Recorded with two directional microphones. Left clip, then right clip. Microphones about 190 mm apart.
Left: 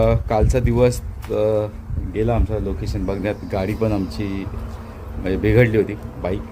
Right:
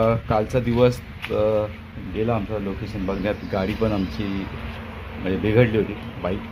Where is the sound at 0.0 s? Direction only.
10° left (ahead or behind).